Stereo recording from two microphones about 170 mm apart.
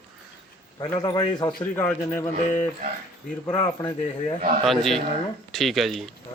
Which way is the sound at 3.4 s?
20° left (ahead or behind).